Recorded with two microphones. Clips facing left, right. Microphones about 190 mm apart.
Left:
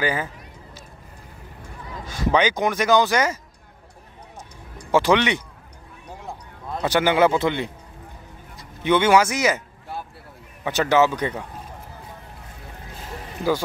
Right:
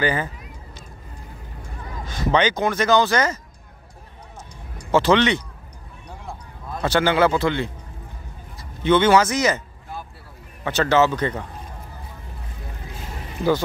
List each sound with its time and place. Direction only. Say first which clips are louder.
0.0 s speech: right 2 dB; 5° left (ahead or behind)
2.0 s speech: even; 10° left (ahead or behind)
4.9 s speech: right 1 dB; 10° left (ahead or behind)
6.2 s a sound: left 1 dB; 15° left (ahead or behind)
8.5 s speech: right 2 dB; 15° left (ahead or behind)
10.6 s speech: even; 15° left (ahead or behind)